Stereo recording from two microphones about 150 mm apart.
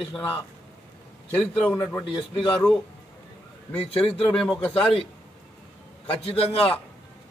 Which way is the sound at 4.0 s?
Centre (ahead or behind).